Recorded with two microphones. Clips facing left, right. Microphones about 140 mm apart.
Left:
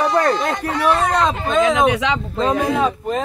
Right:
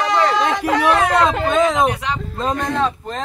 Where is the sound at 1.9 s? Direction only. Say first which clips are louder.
Left 4 dB; 90° left.